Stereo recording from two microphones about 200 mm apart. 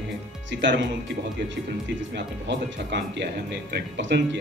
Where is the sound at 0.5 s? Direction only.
65° right (ahead or behind).